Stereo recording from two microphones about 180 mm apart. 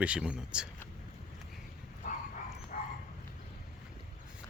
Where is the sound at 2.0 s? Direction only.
40° left (ahead or behind).